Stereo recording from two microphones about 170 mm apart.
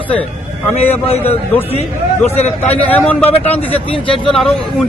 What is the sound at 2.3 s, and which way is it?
Speech, 40° left (ahead or behind).